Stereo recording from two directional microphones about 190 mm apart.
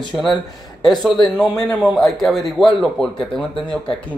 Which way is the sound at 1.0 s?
Centre (ahead or behind).